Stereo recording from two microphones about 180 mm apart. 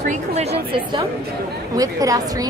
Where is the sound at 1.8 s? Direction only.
20° right (ahead or behind).